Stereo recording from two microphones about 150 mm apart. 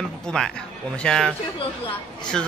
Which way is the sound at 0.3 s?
5° left (ahead or behind).